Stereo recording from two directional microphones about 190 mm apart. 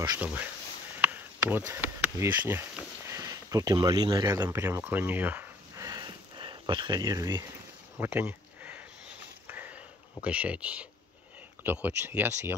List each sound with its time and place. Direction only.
0.2 s speech: 5° right (ahead or behind)
4.4 s a sound: 10° right (ahead or behind)
11.6 s speech: 10° right (ahead or behind)